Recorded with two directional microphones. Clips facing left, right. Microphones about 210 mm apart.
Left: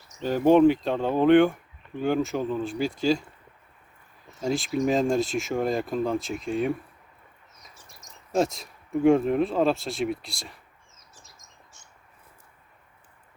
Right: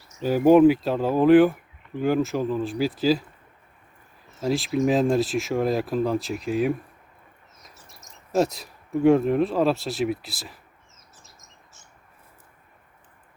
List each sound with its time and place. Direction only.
0.2 s speech: 10° right (ahead or behind)
4.4 s speech: centre (ahead or behind)
11.1 s bird: centre (ahead or behind)